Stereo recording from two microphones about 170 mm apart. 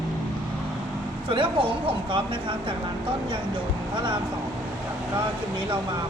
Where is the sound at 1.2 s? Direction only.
30° right (ahead or behind).